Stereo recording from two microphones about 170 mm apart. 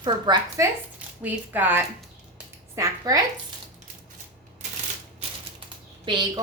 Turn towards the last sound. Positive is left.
turn(degrees=-25)  # may be behind; listen again after turning